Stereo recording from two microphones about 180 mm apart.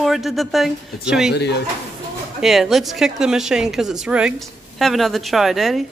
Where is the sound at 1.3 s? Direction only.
65° left (ahead or behind).